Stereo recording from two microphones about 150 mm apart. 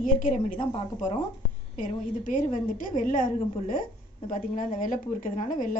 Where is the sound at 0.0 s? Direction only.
60° left (ahead or behind).